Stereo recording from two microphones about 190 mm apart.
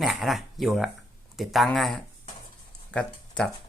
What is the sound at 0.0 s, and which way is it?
Speech, centre (ahead or behind).